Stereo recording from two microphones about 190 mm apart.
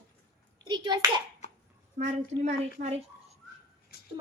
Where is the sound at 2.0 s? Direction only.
35° right (ahead or behind).